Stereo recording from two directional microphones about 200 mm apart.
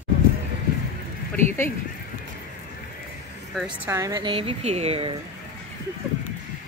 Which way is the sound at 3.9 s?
15° right (ahead or behind).